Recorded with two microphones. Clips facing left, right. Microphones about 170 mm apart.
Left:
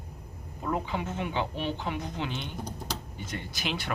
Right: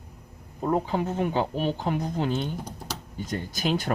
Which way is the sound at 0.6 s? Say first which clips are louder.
Right 6 dB; 40° right (ahead or behind).